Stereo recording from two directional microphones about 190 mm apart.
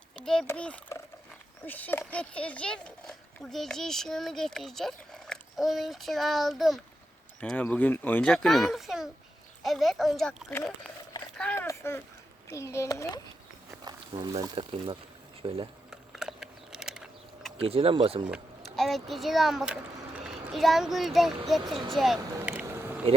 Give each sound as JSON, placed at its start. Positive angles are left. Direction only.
{"t": 0.2, "sound": "a child's voice", "side_deg": 5}
{"t": 10.5, "sound": "a child's voice", "side_deg": 10}
{"t": 13.7, "sound": "a sound", "side_deg": -20}
{"t": 14.4, "sound": "speech", "side_deg": -25}
{"t": 15.9, "sound": "a sound", "side_deg": 0}
{"t": 17.6, "sound": "speech", "side_deg": -30}
{"t": 18.8, "sound": "a child's voice", "side_deg": 0}
{"t": 22.4, "sound": "boat", "side_deg": -10}